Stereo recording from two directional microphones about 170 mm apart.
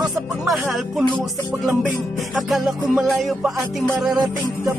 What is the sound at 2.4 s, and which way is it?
Music, centre (ahead or behind).